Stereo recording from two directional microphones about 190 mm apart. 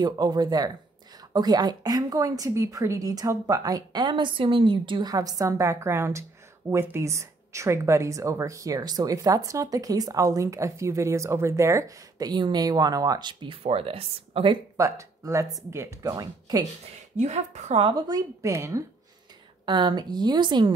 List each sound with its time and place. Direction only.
0.0 s a woman's voice: 20° right (ahead or behind)
14.8 s a woman's voice: 15° right (ahead or behind)
17.2 s a woman's voice: 35° right (ahead or behind)